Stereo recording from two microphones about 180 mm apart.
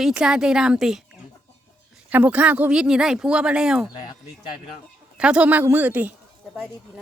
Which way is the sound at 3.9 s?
25° left (ahead or behind).